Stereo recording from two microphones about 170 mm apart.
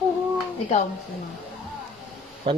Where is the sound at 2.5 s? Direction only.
30° right (ahead or behind).